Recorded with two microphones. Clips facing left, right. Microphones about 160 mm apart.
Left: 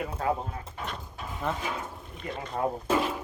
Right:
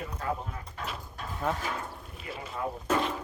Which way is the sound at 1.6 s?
15° left (ahead or behind).